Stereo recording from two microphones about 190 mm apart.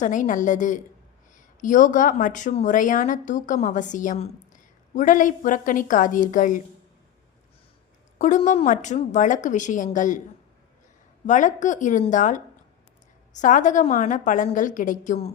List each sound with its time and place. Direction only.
0.0 s speech: 40° left (ahead or behind)
8.2 s a woman's voice: 40° left (ahead or behind)
11.3 s a woman's voice: 40° left (ahead or behind)